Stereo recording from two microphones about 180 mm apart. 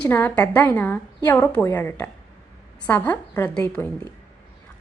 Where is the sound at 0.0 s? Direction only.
10° left (ahead or behind).